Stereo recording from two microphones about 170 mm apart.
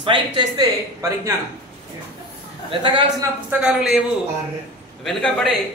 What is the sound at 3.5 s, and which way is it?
Speech, 10° right (ahead or behind).